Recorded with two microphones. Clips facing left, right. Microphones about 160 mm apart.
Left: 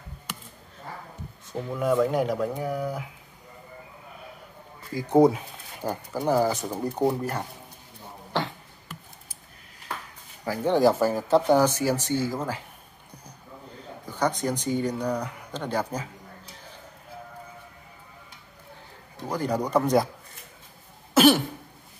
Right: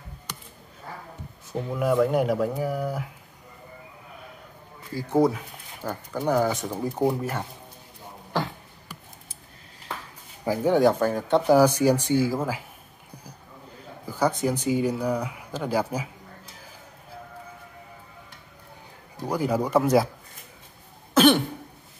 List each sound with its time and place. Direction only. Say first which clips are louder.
1.5 s speech: right 1 dB; 5° right (ahead or behind)
4.9 s speech: left 3 dB; 15° left (ahead or behind)
6.2 s speech: even; 5° left (ahead or behind)
8.3 s beatboxing: right 1 dB; centre (ahead or behind)
10.4 s speech: right 3 dB; 15° right (ahead or behind)
10.7 s speech: even; centre (ahead or behind)
14.0 s speech: right 2 dB; 10° right (ahead or behind)
19.2 s speech: right 2 dB; 10° right (ahead or behind)
21.1 s cough: even; 5° left (ahead or behind)